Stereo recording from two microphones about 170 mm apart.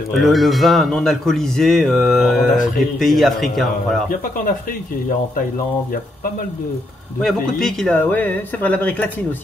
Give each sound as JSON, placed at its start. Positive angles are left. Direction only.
{"t": 0.2, "sound": "a man's voice", "side_deg": 0}
{"t": 7.2, "sound": "speech", "side_deg": 0}